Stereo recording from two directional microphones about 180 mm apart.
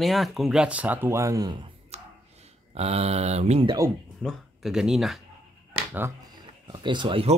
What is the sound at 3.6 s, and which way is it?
Speech, 15° right (ahead or behind).